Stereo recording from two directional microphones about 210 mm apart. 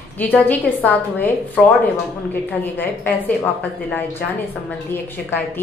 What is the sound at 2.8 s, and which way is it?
Speech, 10° left (ahead or behind).